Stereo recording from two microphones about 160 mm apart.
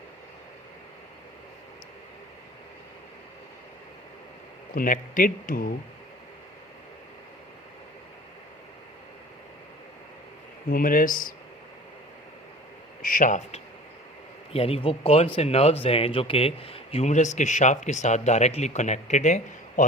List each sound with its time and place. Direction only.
4.7 s speech: 60° left (ahead or behind)
10.7 s speech: 65° left (ahead or behind)
13.0 s speech: 60° left (ahead or behind)
14.5 s speech: 35° left (ahead or behind)